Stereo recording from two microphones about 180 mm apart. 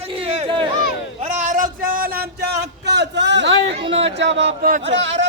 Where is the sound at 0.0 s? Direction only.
30° right (ahead or behind).